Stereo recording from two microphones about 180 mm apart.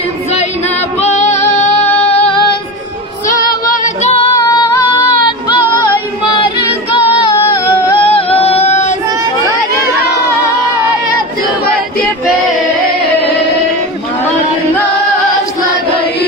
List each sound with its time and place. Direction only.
0.9 s female singing: 40° left (ahead or behind)
2.0 s music: 30° left (ahead or behind)
3.8 s music: 35° left (ahead or behind)
4.4 s female singing: 20° left (ahead or behind)
7.7 s singing: 30° left (ahead or behind)